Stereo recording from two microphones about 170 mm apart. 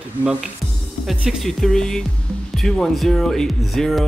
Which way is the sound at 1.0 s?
Centre (ahead or behind).